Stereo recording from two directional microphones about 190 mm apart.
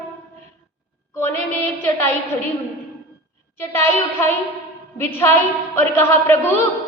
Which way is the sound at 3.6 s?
15° left (ahead or behind).